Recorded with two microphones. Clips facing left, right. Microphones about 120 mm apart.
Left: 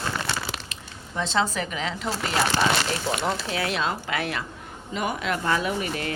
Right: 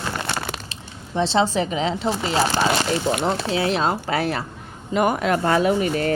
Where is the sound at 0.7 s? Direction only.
30° right (ahead or behind).